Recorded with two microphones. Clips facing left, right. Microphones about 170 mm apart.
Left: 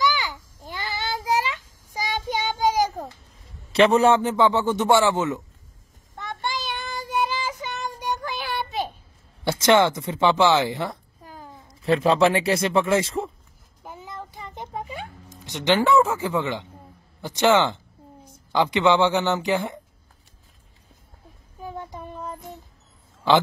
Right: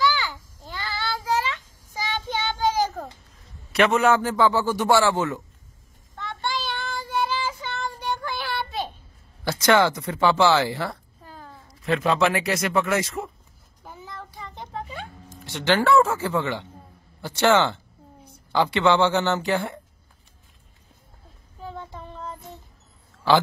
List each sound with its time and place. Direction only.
0.0 s a sound: 15° left (ahead or behind)
3.7 s a man's voice: 30° left (ahead or behind)
6.1 s child singing: 15° left (ahead or behind)
9.4 s speech: 25° left (ahead or behind)
11.8 s a man's voice: 30° left (ahead or behind)
13.8 s a sound: 20° left (ahead or behind)
17.2 s speech: 15° left (ahead or behind)
21.5 s child singing: 15° left (ahead or behind)